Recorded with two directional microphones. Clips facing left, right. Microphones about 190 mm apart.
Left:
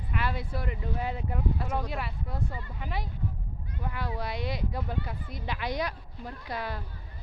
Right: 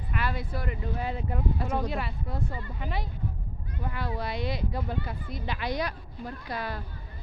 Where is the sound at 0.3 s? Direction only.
25° left (ahead or behind).